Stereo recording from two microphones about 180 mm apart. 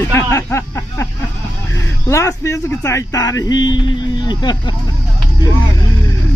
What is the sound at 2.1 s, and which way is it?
Speech, 15° left (ahead or behind).